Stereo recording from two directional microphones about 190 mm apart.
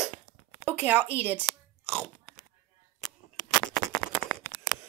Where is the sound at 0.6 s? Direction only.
5° right (ahead or behind).